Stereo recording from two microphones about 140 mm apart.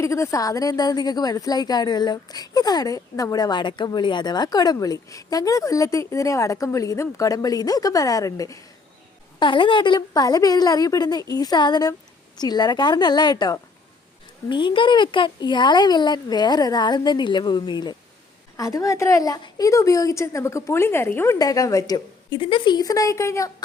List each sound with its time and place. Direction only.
0.0 s a woman's voice: 20° left (ahead or behind)
9.4 s a woman's voice: 35° left (ahead or behind)